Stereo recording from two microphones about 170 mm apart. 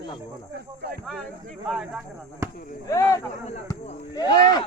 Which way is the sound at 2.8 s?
20° left (ahead or behind).